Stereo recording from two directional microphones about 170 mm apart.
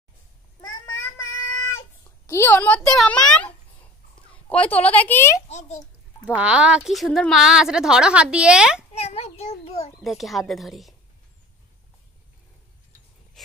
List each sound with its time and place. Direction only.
0.6 s a sound: 25° left (ahead or behind)
5.5 s a child's voice: 45° left (ahead or behind)
6.2 s a woman's voice: 5° right (ahead or behind)
8.9 s a child's voice: 40° left (ahead or behind)
10.0 s a woman's voice: centre (ahead or behind)